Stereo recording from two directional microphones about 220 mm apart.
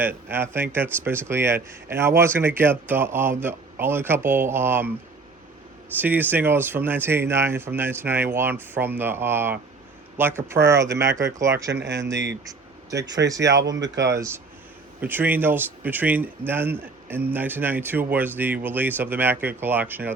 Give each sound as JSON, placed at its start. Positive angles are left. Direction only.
{"t": 0.0, "sound": "speech", "side_deg": -10}
{"t": 6.0, "sound": "speech", "side_deg": -10}
{"t": 12.5, "sound": "vehicle", "side_deg": -15}
{"t": 13.2, "sound": "speech", "side_deg": -15}
{"t": 13.6, "sound": "speech", "side_deg": -55}
{"t": 15.0, "sound": "speech", "side_deg": -10}